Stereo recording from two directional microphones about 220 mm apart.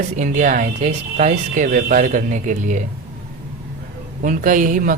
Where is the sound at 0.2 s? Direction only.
35° right (ahead or behind).